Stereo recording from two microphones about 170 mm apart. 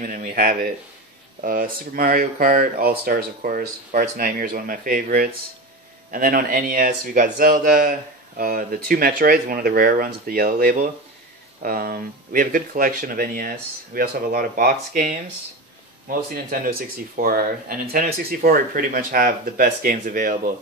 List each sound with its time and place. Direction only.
0.0 s speech: 55° right (ahead or behind)